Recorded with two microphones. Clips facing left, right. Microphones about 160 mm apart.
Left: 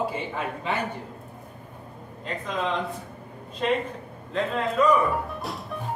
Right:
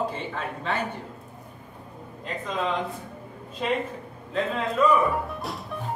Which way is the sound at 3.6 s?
5° right (ahead or behind).